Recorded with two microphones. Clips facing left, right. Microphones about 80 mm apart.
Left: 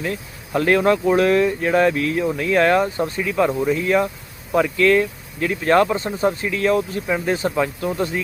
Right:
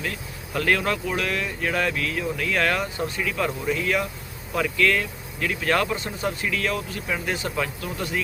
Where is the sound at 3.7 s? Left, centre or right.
Left.